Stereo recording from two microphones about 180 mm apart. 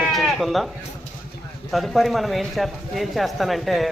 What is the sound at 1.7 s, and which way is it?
Speech, centre (ahead or behind).